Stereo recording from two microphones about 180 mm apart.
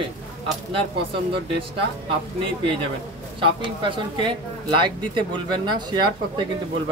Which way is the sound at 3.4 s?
25° right (ahead or behind).